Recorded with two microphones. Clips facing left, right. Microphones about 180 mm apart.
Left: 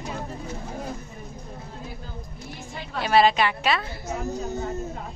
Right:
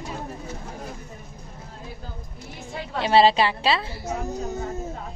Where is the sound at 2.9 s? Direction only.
25° right (ahead or behind).